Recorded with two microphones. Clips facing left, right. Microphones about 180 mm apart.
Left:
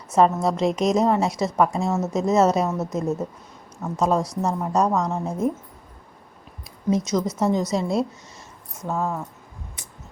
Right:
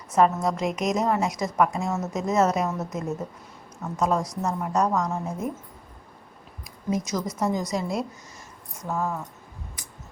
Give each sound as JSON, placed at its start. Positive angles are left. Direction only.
{"t": 0.1, "sound": "a woman's voice", "side_deg": 25}
{"t": 6.7, "sound": "a woman's voice", "side_deg": 25}